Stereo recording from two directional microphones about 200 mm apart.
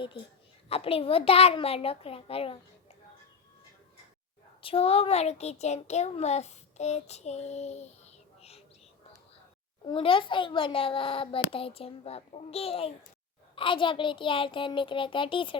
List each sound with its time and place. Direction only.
0.7 s a child's voice: 30° left (ahead or behind)
4.6 s a child's voice: 30° left (ahead or behind)
9.8 s a child's voice: 25° left (ahead or behind)